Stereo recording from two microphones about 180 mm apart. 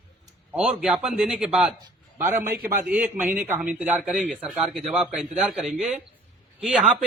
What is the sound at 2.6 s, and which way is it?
Speech, 55° right (ahead or behind).